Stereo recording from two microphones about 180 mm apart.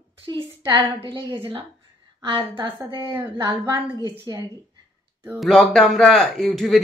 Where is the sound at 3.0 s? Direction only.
15° right (ahead or behind).